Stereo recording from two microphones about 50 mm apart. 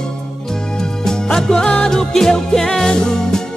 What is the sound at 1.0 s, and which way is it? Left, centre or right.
Music, centre.